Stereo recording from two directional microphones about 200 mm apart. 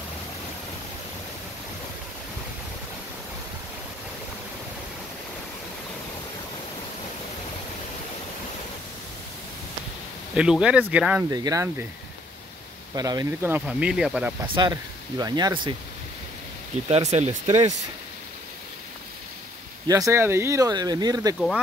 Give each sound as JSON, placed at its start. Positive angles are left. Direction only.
{"t": 10.3, "sound": "speech", "side_deg": -5}
{"t": 11.2, "sound": "speech", "side_deg": -20}
{"t": 12.9, "sound": "speech", "side_deg": -20}
{"t": 14.4, "sound": "speech", "side_deg": -25}
{"t": 16.7, "sound": "speech", "side_deg": -35}
{"t": 19.9, "sound": "speech", "side_deg": -15}